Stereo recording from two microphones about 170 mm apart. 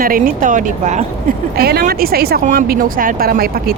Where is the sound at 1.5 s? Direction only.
65° right (ahead or behind).